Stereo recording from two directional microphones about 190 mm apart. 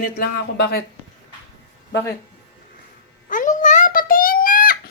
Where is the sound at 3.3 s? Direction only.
45° left (ahead or behind).